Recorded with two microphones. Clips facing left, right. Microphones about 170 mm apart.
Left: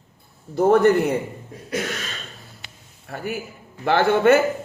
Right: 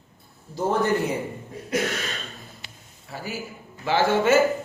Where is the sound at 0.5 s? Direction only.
60° left (ahead or behind).